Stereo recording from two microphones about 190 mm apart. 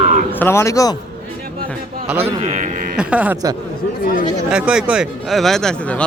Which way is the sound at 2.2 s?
40° right (ahead or behind).